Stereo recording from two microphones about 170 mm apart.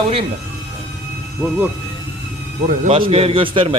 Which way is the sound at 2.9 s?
35° right (ahead or behind).